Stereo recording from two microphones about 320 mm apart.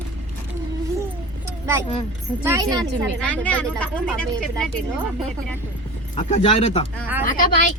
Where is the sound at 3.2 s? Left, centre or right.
Centre.